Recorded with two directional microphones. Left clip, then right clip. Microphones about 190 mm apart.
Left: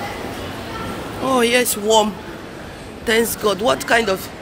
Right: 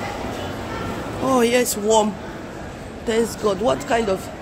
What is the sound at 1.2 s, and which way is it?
Speech, 15° right (ahead or behind).